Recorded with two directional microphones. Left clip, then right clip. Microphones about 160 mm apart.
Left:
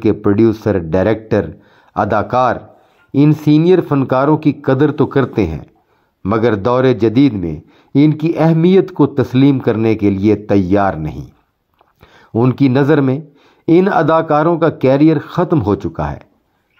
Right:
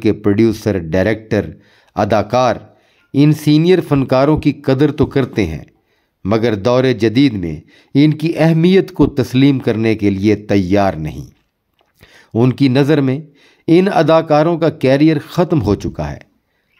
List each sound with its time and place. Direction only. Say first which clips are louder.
0.0 s speech: left 1 dB; 25° right (ahead or behind)
12.0 s a sound: even; 30° right (ahead or behind)
12.5 s speech: left 2 dB; 25° right (ahead or behind)